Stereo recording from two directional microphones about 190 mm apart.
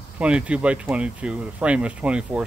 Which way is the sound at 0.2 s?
5° right (ahead or behind).